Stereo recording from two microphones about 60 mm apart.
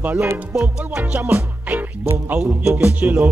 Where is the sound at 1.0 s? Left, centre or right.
Right.